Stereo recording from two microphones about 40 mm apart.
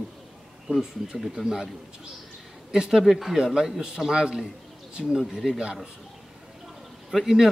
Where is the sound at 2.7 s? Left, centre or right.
Centre.